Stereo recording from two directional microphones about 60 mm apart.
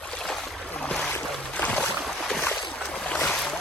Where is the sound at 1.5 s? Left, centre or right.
Left.